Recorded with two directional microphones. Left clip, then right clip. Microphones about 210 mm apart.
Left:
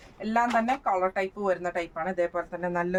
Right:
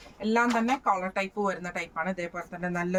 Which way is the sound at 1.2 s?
10° left (ahead or behind).